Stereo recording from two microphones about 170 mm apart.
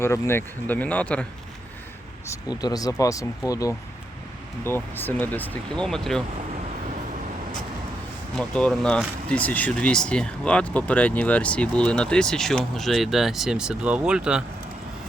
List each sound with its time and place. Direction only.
0.0 s speech: 15° left (ahead or behind)
2.2 s speech: 20° left (ahead or behind); by 6.2 s 5° left (ahead or behind)
8.4 s speech: 5° left (ahead or behind)